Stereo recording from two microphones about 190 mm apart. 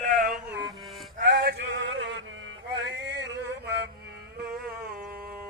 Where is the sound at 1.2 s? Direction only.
60° right (ahead or behind).